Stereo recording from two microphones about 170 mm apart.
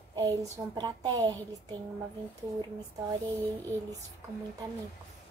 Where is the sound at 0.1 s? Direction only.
20° right (ahead or behind).